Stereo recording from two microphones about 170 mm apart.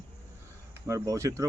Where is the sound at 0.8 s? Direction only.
20° right (ahead or behind).